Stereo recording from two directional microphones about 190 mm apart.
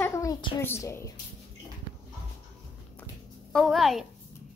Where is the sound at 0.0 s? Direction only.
15° left (ahead or behind).